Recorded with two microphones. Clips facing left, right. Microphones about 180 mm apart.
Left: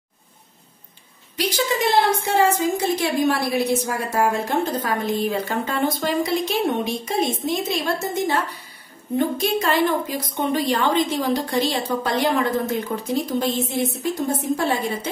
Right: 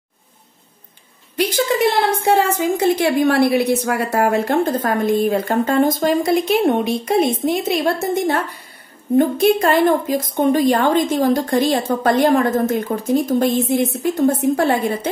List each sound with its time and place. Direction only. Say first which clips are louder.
1.3 s a woman's voice: right 5 dB; 50° right (ahead or behind)